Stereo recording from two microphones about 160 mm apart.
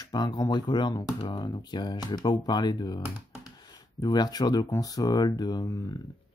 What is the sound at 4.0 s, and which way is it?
Speech, 25° left (ahead or behind).